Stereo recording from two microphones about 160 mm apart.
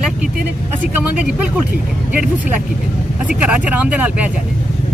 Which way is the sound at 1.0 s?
10° right (ahead or behind).